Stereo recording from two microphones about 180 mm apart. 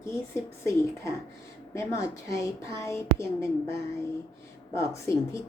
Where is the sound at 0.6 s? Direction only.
15° left (ahead or behind).